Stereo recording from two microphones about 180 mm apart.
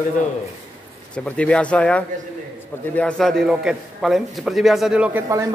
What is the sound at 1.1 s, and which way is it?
A man's voice, 5° left (ahead or behind).